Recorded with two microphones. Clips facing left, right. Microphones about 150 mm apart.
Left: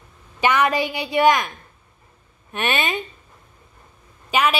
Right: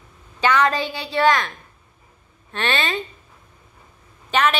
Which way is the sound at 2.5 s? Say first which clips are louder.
Even; 20° left (ahead or behind).